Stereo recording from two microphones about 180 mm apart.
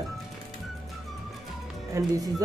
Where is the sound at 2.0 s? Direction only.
20° right (ahead or behind).